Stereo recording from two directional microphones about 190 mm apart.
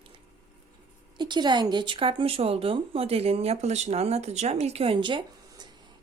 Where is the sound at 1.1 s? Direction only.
25° right (ahead or behind).